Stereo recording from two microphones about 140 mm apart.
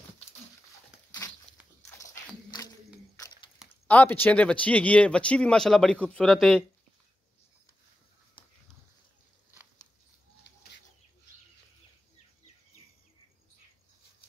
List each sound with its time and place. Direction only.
3.8 s speech: 10° left (ahead or behind)